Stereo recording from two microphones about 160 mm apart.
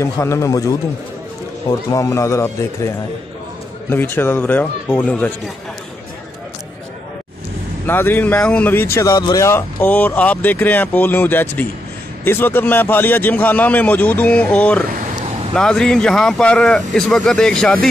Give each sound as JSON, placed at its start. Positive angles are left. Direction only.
{"t": 0.0, "sound": "a man's voice", "side_deg": 20}
{"t": 1.9, "sound": "a man's voice", "side_deg": 20}
{"t": 3.9, "sound": "speech", "side_deg": 15}
{"t": 7.8, "sound": "speech", "side_deg": 15}
{"t": 14.9, "sound": "a sound", "side_deg": -55}
{"t": 15.5, "sound": "speech", "side_deg": 5}